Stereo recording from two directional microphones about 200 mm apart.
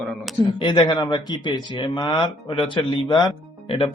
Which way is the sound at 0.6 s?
20° left (ahead or behind).